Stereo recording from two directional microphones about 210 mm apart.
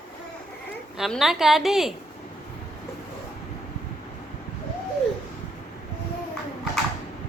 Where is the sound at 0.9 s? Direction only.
Centre (ahead or behind).